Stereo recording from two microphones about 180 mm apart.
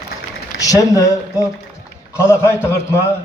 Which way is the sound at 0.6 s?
20° left (ahead or behind).